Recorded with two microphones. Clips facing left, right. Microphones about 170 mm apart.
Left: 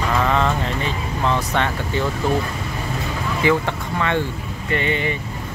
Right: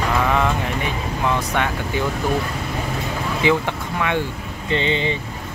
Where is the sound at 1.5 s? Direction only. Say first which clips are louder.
Even; 10° right (ahead or behind).